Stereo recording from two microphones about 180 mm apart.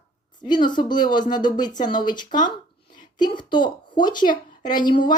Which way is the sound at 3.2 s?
25° left (ahead or behind).